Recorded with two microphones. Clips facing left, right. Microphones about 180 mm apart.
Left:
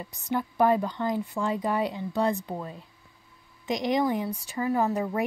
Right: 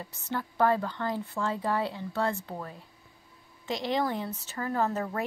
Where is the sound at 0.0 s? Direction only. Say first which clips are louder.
Left 5 dB; 15° left (ahead or behind).